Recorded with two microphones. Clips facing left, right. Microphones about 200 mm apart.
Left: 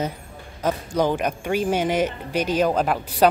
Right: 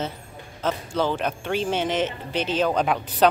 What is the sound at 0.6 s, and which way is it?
A woman's voice, 15° left (ahead or behind).